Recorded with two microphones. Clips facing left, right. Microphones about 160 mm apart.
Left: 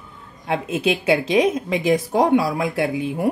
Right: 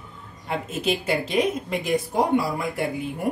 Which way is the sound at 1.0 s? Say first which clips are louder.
Left 7 dB; 90° left.